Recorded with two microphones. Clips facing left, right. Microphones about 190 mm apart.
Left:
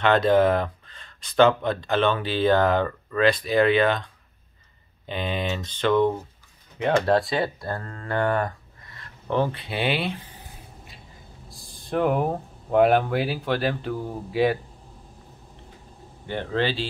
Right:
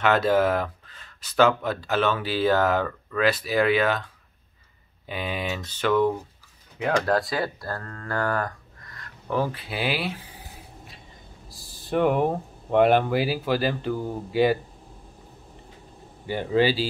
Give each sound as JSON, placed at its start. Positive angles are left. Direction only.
{"t": 0.0, "sound": "speech", "side_deg": -5}
{"t": 7.3, "sound": "speech", "side_deg": 20}
{"t": 9.0, "sound": "speech", "side_deg": -5}
{"t": 11.4, "sound": "speech", "side_deg": -5}
{"t": 16.3, "sound": "speech", "side_deg": -5}